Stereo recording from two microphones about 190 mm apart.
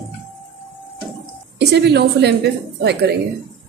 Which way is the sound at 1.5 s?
60° right (ahead or behind).